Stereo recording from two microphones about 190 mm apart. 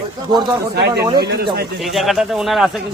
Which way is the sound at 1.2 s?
55° right (ahead or behind).